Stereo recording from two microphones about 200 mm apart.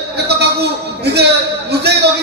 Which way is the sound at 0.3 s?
55° right (ahead or behind).